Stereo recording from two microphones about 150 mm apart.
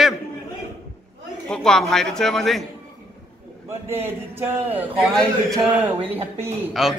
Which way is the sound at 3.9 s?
15° right (ahead or behind).